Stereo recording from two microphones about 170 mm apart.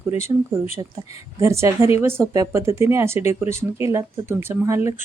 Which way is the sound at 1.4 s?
15° right (ahead or behind).